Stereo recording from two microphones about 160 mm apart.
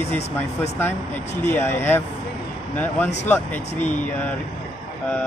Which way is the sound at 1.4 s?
15° left (ahead or behind).